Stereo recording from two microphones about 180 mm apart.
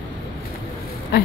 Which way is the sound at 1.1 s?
60° left (ahead or behind).